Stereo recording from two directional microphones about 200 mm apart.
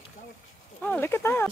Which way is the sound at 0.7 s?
10° left (ahead or behind).